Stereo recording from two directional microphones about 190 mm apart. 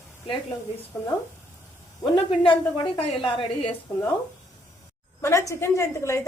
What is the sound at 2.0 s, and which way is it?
A woman's voice, 25° left (ahead or behind).